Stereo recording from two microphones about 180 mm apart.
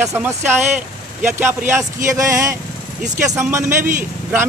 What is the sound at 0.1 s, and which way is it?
Speech, 15° right (ahead or behind).